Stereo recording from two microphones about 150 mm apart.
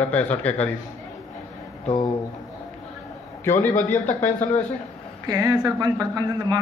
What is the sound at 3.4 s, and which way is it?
Speech, 15° left (ahead or behind).